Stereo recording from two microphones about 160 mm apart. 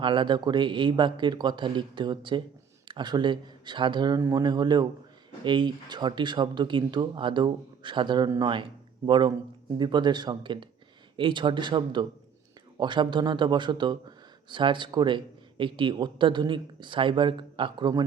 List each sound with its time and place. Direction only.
0.0 s speech: 30° right (ahead or behind)